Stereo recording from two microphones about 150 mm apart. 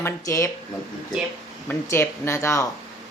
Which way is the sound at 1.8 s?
15° left (ahead or behind).